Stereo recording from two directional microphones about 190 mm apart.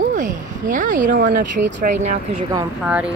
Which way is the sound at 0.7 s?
45° right (ahead or behind).